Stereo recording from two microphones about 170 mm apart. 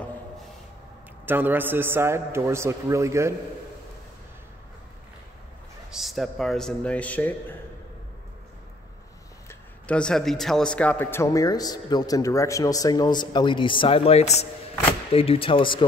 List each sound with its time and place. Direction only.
1.2 s a man's voice: 10° right (ahead or behind)
5.9 s speech: centre (ahead or behind)
9.5 s a man's voice: 5° left (ahead or behind); by 15.8 s 30° left (ahead or behind)